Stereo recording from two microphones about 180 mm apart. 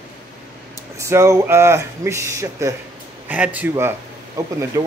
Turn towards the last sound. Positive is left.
turn(degrees=-15)  # may be behind; listen again after turning